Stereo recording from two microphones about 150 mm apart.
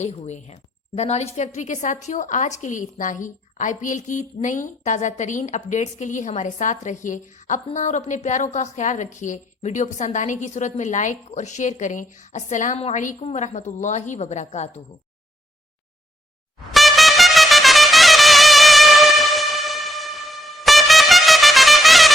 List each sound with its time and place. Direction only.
0.0 s a woman's voice: 50° left (ahead or behind)
16.7 s music: centre (ahead or behind)